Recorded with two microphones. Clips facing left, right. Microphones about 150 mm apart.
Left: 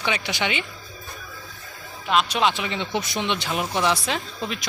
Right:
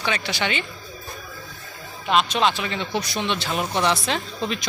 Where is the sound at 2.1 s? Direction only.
5° left (ahead or behind).